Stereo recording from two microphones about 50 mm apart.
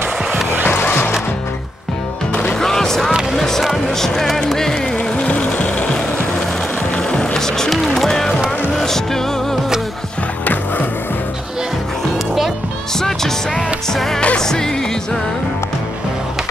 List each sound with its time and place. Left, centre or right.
0.7 s music: left
2.6 s music: centre
3.1 s basketball bounce: centre
3.3 s music: centre
4.9 s music: left
7.0 s music: centre
10.4 s skateboard: left
13.0 s music: centre